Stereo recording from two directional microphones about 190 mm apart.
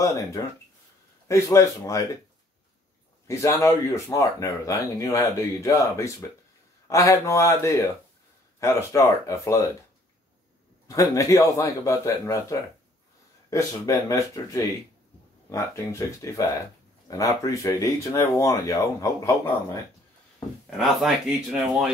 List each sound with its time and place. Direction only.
0.0 s speech: 15° left (ahead or behind)
3.3 s speech: 15° left (ahead or behind)
10.9 s speech: 15° left (ahead or behind)
20.7 s speech: centre (ahead or behind)